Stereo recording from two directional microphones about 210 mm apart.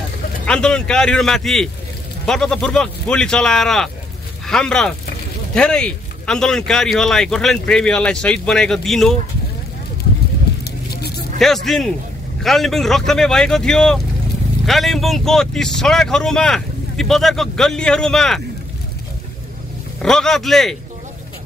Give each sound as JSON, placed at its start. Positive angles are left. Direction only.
{"t": 0.5, "sound": "speech", "side_deg": 5}
{"t": 10.6, "sound": "vehicle", "side_deg": 50}
{"t": 11.3, "sound": "speech", "side_deg": 0}
{"t": 20.0, "sound": "speech", "side_deg": 5}